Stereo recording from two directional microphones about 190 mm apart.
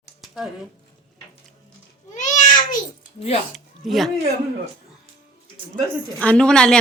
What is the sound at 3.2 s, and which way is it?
Speech, 30° left (ahead or behind).